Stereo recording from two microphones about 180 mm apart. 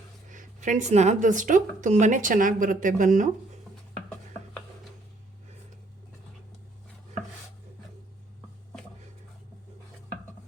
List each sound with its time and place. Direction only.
0.3 s speech: 45° right (ahead or behind)